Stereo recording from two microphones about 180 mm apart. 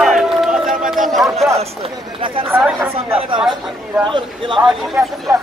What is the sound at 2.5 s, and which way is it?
Speech, 10° right (ahead or behind).